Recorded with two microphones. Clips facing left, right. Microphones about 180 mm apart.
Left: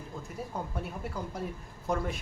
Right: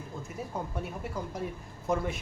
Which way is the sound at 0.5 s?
5° right (ahead or behind).